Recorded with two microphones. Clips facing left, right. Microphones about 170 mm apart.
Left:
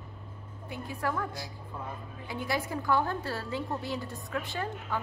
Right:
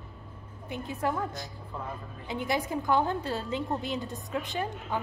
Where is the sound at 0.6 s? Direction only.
20° right (ahead or behind).